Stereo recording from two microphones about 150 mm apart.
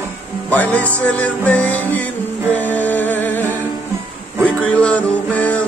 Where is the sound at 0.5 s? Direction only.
10° left (ahead or behind).